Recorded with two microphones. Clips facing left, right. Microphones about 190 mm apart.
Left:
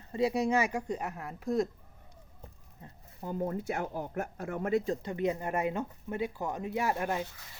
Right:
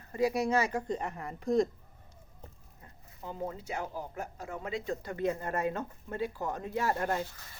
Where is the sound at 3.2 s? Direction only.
50° left (ahead or behind).